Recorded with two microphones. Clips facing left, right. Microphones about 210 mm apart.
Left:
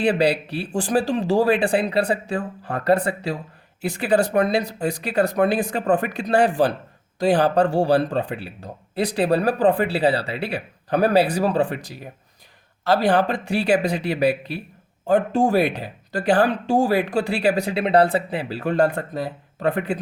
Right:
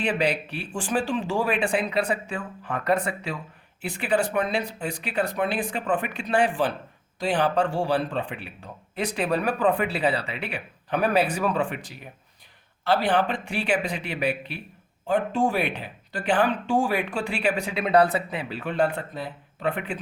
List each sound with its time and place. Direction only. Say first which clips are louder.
0.0 s speech: left 6 dB; 35° left (ahead or behind)